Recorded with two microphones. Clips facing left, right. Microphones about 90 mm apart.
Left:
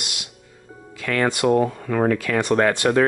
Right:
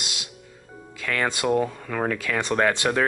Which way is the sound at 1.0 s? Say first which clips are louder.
Left 5 dB; 45° left (ahead or behind).